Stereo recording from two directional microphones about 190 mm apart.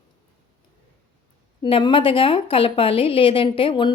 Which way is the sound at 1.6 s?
25° left (ahead or behind).